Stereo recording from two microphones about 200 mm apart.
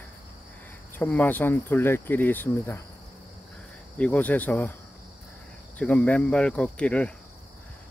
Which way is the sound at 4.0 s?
5° left (ahead or behind).